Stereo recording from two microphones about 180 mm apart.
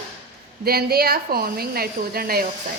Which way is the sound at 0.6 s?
60° right (ahead or behind).